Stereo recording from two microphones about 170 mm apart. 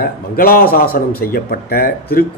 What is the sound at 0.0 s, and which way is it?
A man's voice, 60° left (ahead or behind).